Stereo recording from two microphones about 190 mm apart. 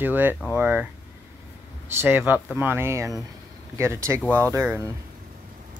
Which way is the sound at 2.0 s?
10° right (ahead or behind).